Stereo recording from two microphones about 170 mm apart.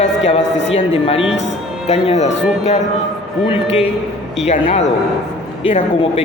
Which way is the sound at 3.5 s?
35° left (ahead or behind).